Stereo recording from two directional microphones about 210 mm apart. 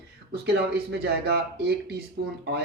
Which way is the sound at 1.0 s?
50° right (ahead or behind).